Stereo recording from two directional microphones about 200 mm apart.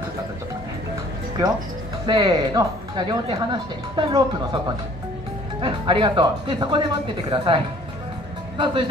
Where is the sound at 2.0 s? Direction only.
20° right (ahead or behind).